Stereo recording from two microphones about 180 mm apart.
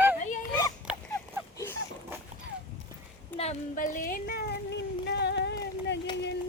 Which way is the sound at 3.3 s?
35° left (ahead or behind).